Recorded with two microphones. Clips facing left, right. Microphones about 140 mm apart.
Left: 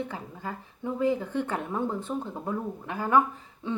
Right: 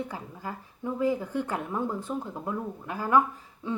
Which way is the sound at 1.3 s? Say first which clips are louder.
Left 1 dB; 25° left (ahead or behind).